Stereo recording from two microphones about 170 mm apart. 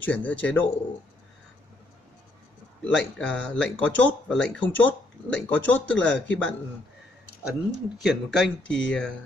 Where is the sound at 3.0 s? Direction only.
5° left (ahead or behind).